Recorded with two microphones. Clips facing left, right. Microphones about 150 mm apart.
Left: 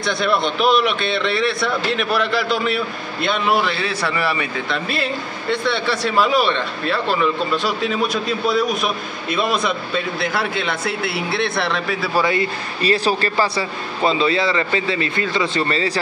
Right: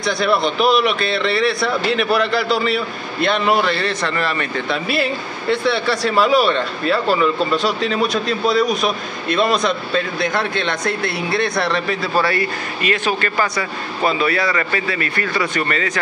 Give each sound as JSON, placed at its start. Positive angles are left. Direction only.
{"t": 0.0, "sound": "speech", "side_deg": 0}
{"t": 12.2, "sound": "a man's voice", "side_deg": 20}
{"t": 12.8, "sound": "a man's voice", "side_deg": 35}